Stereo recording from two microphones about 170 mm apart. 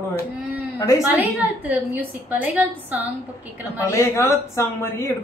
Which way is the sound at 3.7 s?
15° left (ahead or behind).